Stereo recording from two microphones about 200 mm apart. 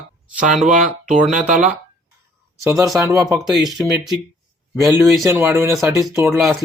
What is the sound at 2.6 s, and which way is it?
Speech, 15° right (ahead or behind).